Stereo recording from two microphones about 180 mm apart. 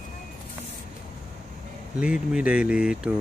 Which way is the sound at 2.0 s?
5° right (ahead or behind).